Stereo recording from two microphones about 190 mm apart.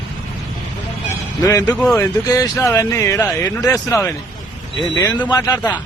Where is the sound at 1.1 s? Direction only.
15° left (ahead or behind).